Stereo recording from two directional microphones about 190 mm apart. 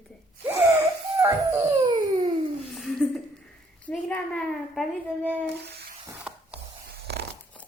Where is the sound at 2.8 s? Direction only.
Centre (ahead or behind).